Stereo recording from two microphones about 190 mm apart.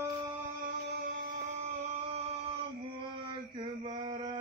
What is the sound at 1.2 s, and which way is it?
Music, 40° right (ahead or behind).